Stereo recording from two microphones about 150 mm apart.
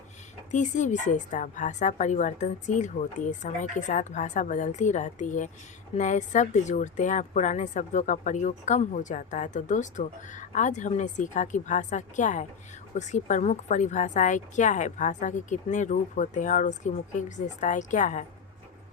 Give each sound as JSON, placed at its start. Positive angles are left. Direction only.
{"t": 0.5, "sound": "speech", "side_deg": 55}